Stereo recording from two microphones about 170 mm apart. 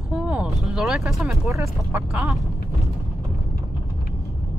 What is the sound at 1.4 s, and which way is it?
Speech, 15° right (ahead or behind).